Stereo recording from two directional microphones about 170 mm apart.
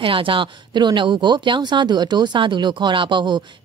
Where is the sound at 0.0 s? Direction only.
30° right (ahead or behind).